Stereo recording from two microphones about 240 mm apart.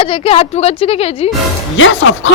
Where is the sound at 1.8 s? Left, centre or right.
Left.